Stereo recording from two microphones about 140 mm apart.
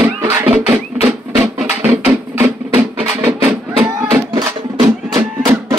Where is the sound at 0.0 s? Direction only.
20° right (ahead or behind).